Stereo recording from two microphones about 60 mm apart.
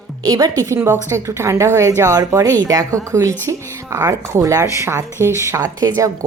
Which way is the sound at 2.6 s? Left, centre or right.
Right.